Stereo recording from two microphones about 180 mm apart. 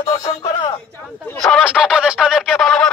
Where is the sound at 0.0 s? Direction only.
25° left (ahead or behind).